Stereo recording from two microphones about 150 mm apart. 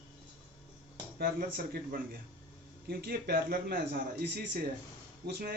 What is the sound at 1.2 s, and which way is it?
Speech, 80° right.